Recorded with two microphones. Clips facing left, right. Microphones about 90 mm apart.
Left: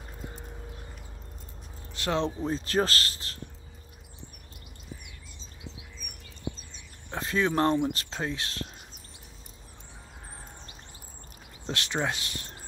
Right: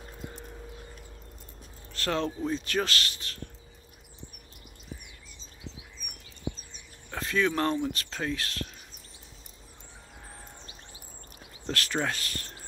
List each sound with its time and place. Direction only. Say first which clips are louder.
2.0 s speech: left 1 dB; 20° left (ahead or behind)
7.1 s speech: even; 25° left (ahead or behind)
11.6 s speech: even; 20° left (ahead or behind)